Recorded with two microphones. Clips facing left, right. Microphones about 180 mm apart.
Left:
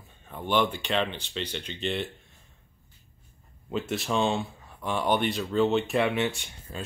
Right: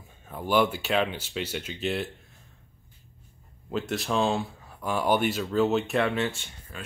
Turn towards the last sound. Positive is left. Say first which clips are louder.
# left 4 dB
turn(degrees=25)  # may be behind; listen again after turning